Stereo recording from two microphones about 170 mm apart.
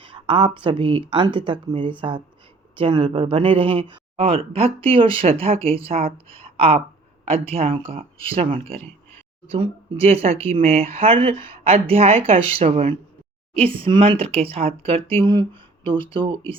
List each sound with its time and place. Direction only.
0.0 s speech: 30° right (ahead or behind)